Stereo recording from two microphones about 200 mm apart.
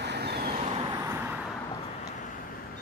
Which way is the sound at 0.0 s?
55° right (ahead or behind).